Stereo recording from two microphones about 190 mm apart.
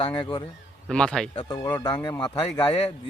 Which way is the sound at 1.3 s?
25° left (ahead or behind).